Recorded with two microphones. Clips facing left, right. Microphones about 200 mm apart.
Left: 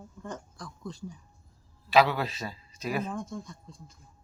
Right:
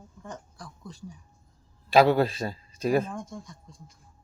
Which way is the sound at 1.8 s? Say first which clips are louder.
Right 4 dB; 45° right (ahead or behind).